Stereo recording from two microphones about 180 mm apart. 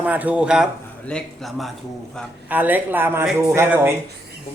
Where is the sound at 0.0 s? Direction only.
10° right (ahead or behind).